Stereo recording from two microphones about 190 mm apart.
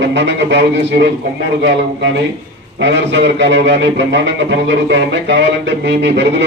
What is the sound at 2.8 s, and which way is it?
A man's voice, 70° right (ahead or behind).